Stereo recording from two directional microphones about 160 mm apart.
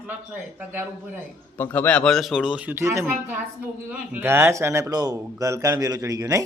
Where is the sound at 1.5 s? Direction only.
15° left (ahead or behind).